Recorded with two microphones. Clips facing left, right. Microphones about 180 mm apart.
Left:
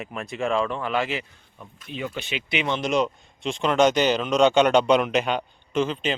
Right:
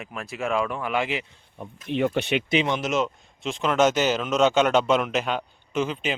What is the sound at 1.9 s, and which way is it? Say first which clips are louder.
Speech: right 8 dB; 65° right (ahead or behind).